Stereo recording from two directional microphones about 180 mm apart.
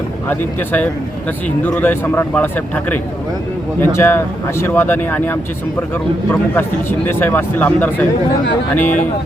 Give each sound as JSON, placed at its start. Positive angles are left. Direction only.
{"t": 0.3, "sound": "speech", "side_deg": 10}
{"t": 6.5, "sound": "speech", "side_deg": 10}
{"t": 8.8, "sound": "speech", "side_deg": 45}